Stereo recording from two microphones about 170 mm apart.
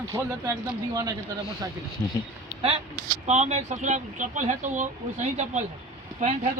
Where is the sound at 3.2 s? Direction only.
40° right (ahead or behind).